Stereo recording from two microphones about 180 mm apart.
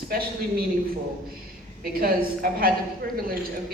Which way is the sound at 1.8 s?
55° right (ahead or behind).